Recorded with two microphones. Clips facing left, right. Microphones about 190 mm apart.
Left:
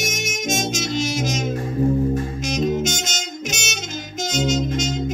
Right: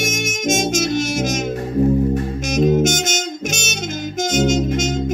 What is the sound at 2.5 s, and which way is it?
Saxophone, 50° right (ahead or behind).